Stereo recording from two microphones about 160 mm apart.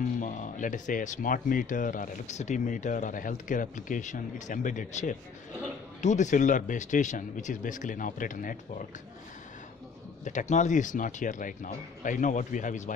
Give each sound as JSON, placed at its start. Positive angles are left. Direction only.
{"t": 0.2, "sound": "speech", "side_deg": 50}
{"t": 10.2, "sound": "speech", "side_deg": 50}